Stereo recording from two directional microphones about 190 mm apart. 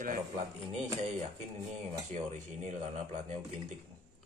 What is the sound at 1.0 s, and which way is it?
A man's voice, 35° right (ahead or behind).